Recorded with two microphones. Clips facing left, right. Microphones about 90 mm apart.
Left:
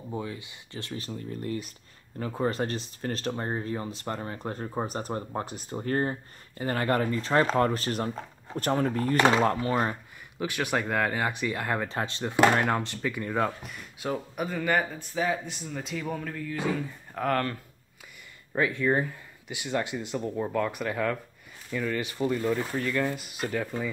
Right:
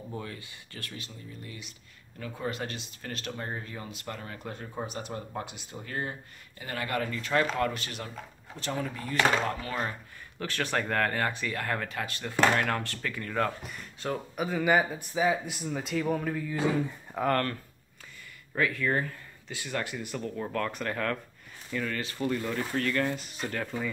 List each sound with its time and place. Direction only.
0.1 s speech: 20° left (ahead or behind)
0.9 s speech: 40° left (ahead or behind)
8.5 s speech: 50° left (ahead or behind); by 9.9 s 30° left (ahead or behind)
10.4 s speech: 15° left (ahead or behind)
13.6 s speech: centre (ahead or behind)
18.5 s speech: 20° left (ahead or behind); by 23.9 s 5° left (ahead or behind)